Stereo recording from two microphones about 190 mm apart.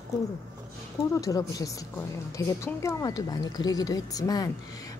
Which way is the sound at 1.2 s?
20° left (ahead or behind).